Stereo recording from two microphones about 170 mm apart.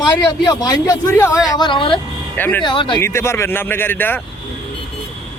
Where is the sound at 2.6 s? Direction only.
30° left (ahead or behind).